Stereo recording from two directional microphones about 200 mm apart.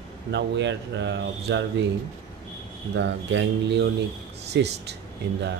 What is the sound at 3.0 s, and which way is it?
Speech, 60° right (ahead or behind).